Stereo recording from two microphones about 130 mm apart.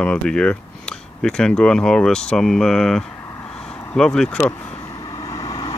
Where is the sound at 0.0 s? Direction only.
5° left (ahead or behind).